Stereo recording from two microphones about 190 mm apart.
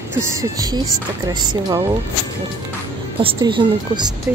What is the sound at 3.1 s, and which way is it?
Speech, 25° right (ahead or behind).